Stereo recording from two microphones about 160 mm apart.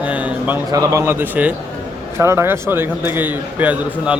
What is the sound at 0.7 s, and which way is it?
A man's voice, 20° right (ahead or behind).